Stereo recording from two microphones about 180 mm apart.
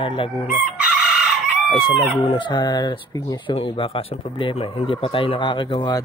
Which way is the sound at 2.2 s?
30° left (ahead or behind).